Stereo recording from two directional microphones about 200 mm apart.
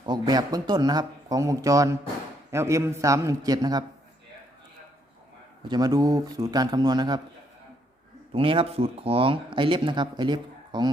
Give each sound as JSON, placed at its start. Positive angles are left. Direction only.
{"t": 0.0, "sound": "a man's voice", "side_deg": -20}
{"t": 5.6, "sound": "speech", "side_deg": -20}
{"t": 8.3, "sound": "speech", "side_deg": -25}